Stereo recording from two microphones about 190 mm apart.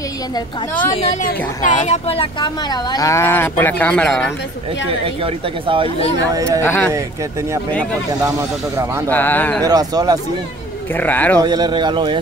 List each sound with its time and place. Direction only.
1.0 s speech: 40° left (ahead or behind)
1.9 s speech: 30° left (ahead or behind); by 4.3 s 5° left (ahead or behind)
4.8 s speech: 30° right (ahead or behind)
6.6 s speech: 10° left (ahead or behind)
8.7 s speech: 15° right (ahead or behind)
9.1 s speech: 10° left (ahead or behind)
9.6 s speech: 20° right (ahead or behind)
11.0 s speech: 10° left (ahead or behind)
11.4 s speech: 20° right (ahead or behind)